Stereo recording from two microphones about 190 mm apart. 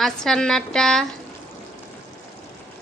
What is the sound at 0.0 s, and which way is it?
A woman's voice, 5° left (ahead or behind).